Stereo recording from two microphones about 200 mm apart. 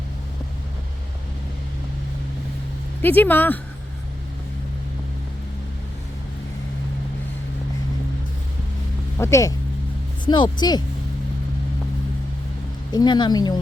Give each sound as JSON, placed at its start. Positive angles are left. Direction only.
{"t": 3.0, "sound": "speech", "side_deg": 10}
{"t": 9.1, "sound": "speech", "side_deg": 15}
{"t": 12.9, "sound": "speech", "side_deg": 20}